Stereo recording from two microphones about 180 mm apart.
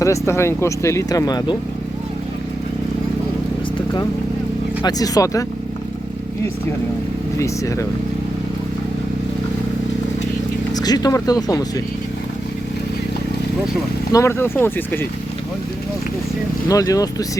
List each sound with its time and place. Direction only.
0.0 s speech: 15° left (ahead or behind)
4.8 s speech: 20° left (ahead or behind)
7.3 s speech: 15° left (ahead or behind)
10.8 s speech: 20° left (ahead or behind)
14.1 s speech: 15° left (ahead or behind)
16.6 s speech: 20° left (ahead or behind)